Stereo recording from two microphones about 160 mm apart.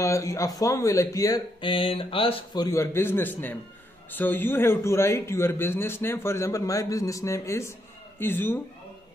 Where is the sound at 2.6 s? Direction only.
20° left (ahead or behind).